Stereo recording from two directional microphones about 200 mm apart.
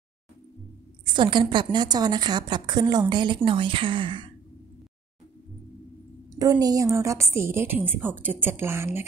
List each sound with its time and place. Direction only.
1.1 s a woman's voice: 25° right (ahead or behind)
6.3 s a woman's voice: 15° right (ahead or behind)